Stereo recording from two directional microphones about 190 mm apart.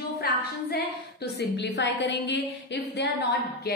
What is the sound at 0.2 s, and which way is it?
A woman's voice, 55° left (ahead or behind).